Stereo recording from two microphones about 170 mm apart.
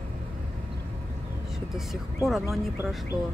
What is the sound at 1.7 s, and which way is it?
Speech, centre (ahead or behind).